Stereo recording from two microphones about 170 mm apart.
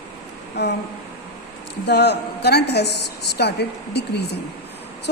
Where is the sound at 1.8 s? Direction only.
85° left.